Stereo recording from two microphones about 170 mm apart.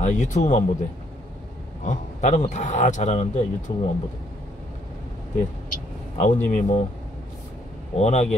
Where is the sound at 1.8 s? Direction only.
45° left (ahead or behind).